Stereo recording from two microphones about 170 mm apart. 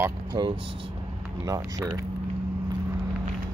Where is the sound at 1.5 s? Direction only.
20° right (ahead or behind).